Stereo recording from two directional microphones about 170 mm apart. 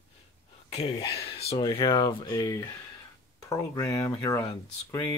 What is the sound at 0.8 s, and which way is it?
Speech, 30° left (ahead or behind).